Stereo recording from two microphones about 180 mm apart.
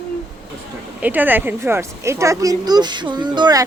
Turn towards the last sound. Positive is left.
turn(degrees=-25)  # may be behind; listen again after turning